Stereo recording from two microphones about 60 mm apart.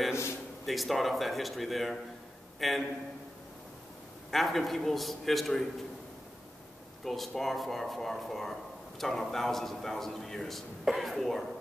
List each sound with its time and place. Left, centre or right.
0.7 s speech: centre
4.3 s speech: centre
7.1 s speech: centre